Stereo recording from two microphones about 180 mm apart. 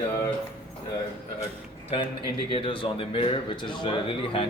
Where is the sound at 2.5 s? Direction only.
30° left (ahead or behind).